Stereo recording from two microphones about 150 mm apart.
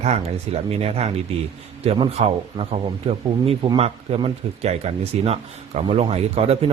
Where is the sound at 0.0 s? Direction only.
45° right (ahead or behind).